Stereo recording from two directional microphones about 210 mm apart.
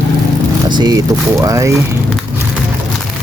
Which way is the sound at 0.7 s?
20° right (ahead or behind).